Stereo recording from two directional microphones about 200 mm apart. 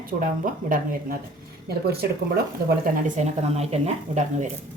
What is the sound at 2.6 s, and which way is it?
A woman's voice, 45° right (ahead or behind).